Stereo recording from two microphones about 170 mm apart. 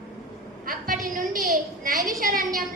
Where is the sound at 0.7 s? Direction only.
55° right (ahead or behind).